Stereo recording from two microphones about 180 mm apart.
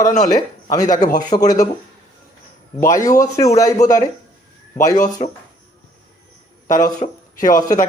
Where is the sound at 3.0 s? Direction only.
20° left (ahead or behind).